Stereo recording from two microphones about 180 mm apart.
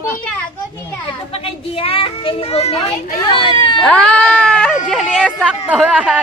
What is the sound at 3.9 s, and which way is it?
Speech, 5° left (ahead or behind).